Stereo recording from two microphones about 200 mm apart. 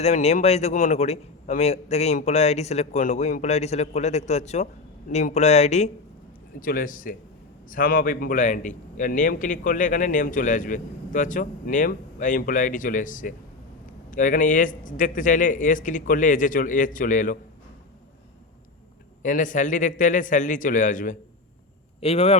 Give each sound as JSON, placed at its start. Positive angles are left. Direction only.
{"t": 0.0, "sound": "a man's voice", "side_deg": 30}
{"t": 6.6, "sound": "a man's voice", "side_deg": 45}
{"t": 19.2, "sound": "a man's voice", "side_deg": 40}